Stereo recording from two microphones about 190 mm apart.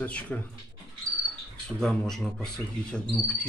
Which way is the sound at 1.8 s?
Centre (ahead or behind).